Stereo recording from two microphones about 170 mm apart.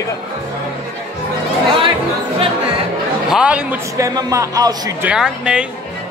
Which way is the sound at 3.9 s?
20° right (ahead or behind).